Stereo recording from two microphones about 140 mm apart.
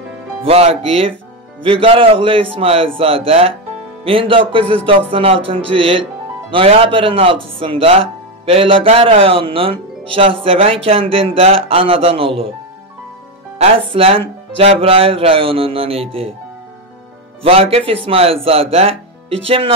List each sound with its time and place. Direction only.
0.4 s speech: 45° right (ahead or behind)
13.6 s speech: 45° right (ahead or behind)
17.4 s speech: 45° right (ahead or behind)